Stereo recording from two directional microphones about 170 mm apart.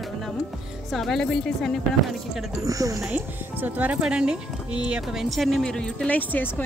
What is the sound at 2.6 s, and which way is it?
A woman's voice, 20° right (ahead or behind).